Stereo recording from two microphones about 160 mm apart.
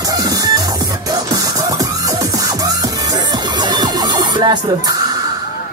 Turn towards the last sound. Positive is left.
turn(degrees=-25)  # may be behind; listen again after turning